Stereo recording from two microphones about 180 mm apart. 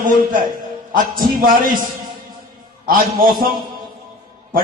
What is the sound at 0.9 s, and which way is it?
Speech, 50° right (ahead or behind).